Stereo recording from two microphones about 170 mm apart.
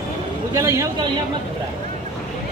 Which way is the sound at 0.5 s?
15° right (ahead or behind).